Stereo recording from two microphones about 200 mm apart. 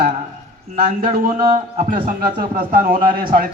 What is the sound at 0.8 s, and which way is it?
A man's voice, 45° right (ahead or behind).